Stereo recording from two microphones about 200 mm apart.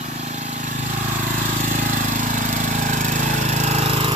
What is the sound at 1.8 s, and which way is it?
Jackhammer, 40° right (ahead or behind).